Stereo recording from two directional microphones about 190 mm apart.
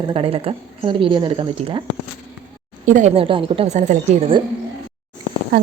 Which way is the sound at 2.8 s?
45° right (ahead or behind).